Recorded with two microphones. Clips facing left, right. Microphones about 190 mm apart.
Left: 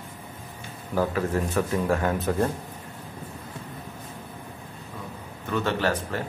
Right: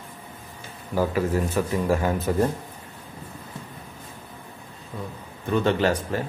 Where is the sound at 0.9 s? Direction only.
5° right (ahead or behind).